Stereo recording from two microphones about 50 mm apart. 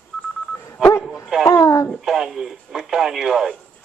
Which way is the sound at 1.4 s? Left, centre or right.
Left.